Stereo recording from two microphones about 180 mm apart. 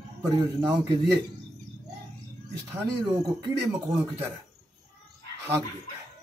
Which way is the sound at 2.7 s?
20° right (ahead or behind).